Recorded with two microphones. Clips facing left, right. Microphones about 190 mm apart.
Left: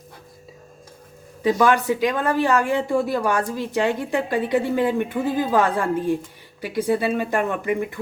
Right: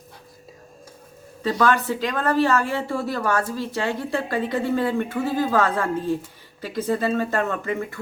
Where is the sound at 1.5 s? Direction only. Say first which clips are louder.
Left 3 dB; 15° left (ahead or behind).